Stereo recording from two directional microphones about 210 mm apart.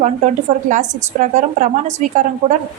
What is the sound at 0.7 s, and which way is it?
A woman's voice, 35° right (ahead or behind).